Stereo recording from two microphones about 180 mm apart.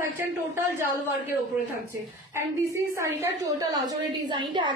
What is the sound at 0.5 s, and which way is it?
Speech, 15° right (ahead or behind).